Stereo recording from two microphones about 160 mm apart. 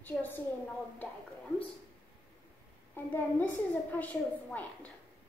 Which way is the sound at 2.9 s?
10° left (ahead or behind).